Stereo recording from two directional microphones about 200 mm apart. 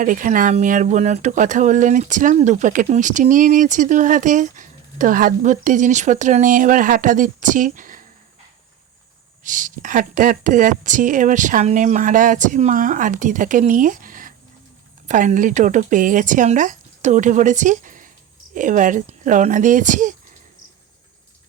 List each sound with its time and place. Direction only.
0.0 s speech: 40° right (ahead or behind)
9.4 s speech: 40° right (ahead or behind)